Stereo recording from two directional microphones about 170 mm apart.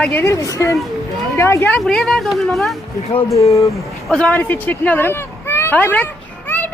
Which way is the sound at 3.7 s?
Centre (ahead or behind).